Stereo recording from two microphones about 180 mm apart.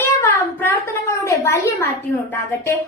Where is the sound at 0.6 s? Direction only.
15° left (ahead or behind).